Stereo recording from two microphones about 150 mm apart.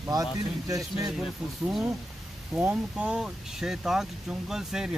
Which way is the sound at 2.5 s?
10° right (ahead or behind).